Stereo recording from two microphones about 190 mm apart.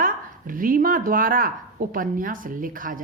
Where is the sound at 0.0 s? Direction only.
45° right (ahead or behind).